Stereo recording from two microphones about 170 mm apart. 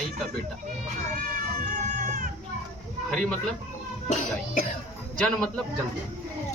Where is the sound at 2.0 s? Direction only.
50° right (ahead or behind).